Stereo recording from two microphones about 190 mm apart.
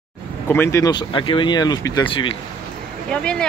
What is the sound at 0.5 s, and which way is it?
Speech, 15° left (ahead or behind).